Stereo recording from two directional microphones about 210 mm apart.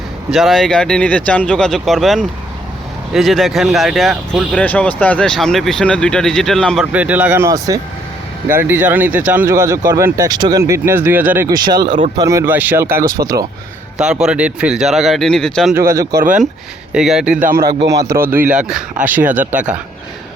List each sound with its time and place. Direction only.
0.3 s speech: centre (ahead or behind); by 13.5 s 15° right (ahead or behind)
14.0 s speech: 5° right (ahead or behind)
15.7 s speech: 15° right (ahead or behind)
16.9 s speech: 5° right (ahead or behind)
17.9 s speech: 15° right (ahead or behind)